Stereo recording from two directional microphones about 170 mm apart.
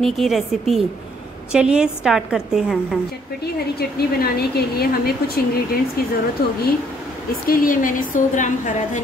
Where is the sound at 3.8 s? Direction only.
65° left (ahead or behind).